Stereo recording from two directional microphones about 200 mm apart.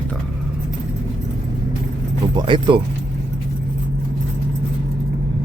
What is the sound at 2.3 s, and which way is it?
Speech, 20° right (ahead or behind).